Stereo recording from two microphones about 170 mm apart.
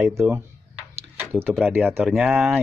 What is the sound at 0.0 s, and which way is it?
Speech, 5° right (ahead or behind).